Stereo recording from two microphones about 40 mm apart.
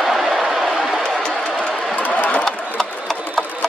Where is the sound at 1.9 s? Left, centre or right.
Left.